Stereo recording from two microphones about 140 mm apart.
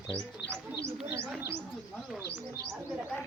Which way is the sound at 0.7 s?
20° right (ahead or behind).